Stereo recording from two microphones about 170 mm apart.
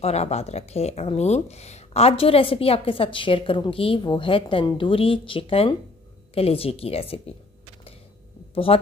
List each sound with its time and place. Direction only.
0.0 s speech: 40° left (ahead or behind)
8.7 s speech: 35° left (ahead or behind)